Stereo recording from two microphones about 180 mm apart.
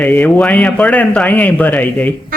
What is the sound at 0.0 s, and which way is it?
Speech, 10° left (ahead or behind).